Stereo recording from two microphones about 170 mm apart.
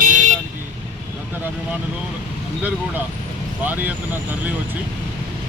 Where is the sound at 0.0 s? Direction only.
50° right (ahead or behind).